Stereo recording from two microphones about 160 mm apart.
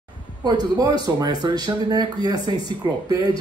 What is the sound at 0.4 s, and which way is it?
Speech, 25° right (ahead or behind).